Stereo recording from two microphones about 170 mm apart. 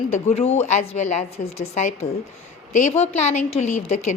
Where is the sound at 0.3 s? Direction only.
40° left (ahead or behind).